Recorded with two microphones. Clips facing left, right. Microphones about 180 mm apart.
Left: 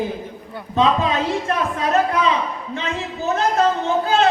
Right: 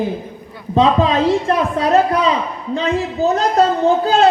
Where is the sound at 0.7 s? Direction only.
35° right (ahead or behind).